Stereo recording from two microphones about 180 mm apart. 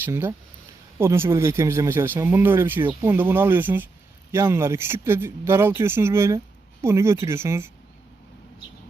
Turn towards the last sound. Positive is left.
turn(degrees=-15)  # may be behind; listen again after turning